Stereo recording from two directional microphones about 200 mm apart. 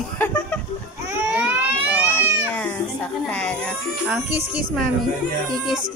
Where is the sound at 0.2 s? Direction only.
10° left (ahead or behind).